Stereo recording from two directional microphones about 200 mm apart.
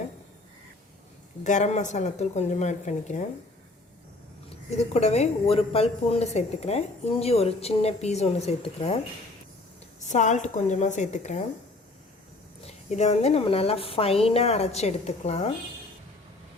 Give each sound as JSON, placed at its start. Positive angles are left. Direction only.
{"t": 1.5, "sound": "speech", "side_deg": 35}
{"t": 4.9, "sound": "speech", "side_deg": 35}
{"t": 10.0, "sound": "speech", "side_deg": 35}
{"t": 12.6, "sound": "speech", "side_deg": 35}